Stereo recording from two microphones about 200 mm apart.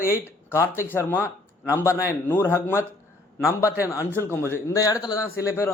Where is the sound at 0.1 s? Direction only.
15° left (ahead or behind).